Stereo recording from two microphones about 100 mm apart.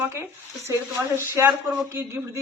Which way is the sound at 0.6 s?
25° right (ahead or behind).